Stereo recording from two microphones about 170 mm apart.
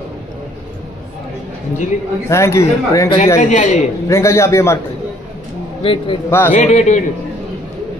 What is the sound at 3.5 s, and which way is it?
Speech, 45° left (ahead or behind).